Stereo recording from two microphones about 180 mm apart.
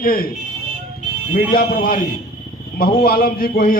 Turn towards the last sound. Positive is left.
turn(degrees=55)  # may be behind; listen again after turning